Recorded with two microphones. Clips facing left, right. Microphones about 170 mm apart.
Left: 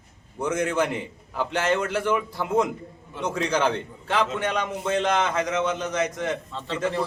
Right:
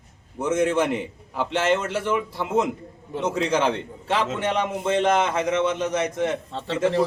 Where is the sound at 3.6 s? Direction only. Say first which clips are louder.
Right 1 dB; 30° right (ahead or behind).